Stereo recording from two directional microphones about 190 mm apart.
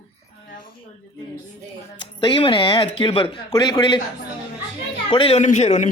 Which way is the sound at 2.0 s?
25° left (ahead or behind).